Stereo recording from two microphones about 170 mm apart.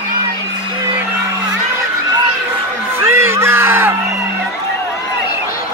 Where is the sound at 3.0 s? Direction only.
15° right (ahead or behind).